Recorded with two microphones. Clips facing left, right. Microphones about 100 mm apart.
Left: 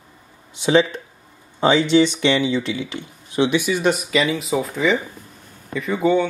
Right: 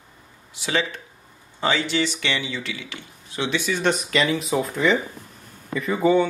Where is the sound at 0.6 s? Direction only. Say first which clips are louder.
Left 9 dB; 20° left (ahead or behind).